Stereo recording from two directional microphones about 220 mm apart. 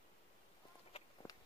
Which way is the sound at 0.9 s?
25° left (ahead or behind).